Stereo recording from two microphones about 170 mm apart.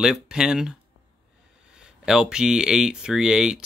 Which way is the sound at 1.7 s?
5° right (ahead or behind).